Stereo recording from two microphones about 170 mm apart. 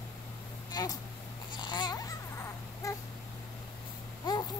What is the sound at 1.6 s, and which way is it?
Babbling, 25° left (ahead or behind).